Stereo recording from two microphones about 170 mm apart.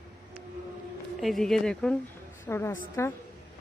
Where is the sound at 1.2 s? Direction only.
Centre (ahead or behind).